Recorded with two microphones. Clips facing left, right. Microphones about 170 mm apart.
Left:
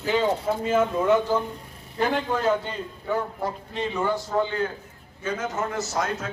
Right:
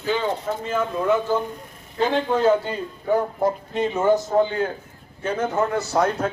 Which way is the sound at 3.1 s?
45° right (ahead or behind).